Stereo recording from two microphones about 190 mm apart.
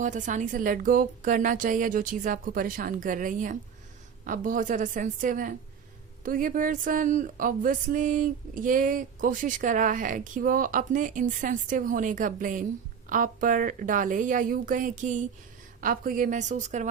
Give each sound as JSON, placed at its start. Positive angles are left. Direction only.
{"t": 0.0, "sound": "a woman's voice", "side_deg": -40}